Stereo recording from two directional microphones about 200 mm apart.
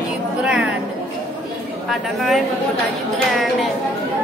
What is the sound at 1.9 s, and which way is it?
Speech, centre (ahead or behind).